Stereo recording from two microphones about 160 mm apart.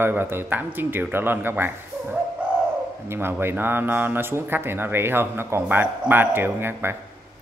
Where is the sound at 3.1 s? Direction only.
15° right (ahead or behind).